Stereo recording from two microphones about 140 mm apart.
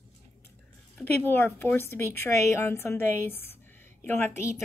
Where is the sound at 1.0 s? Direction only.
15° left (ahead or behind).